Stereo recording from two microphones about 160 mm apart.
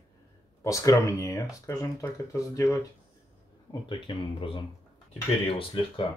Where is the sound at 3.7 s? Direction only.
30° left (ahead or behind).